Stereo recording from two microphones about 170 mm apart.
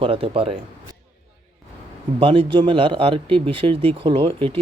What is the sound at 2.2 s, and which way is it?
A man's voice, 30° right (ahead or behind).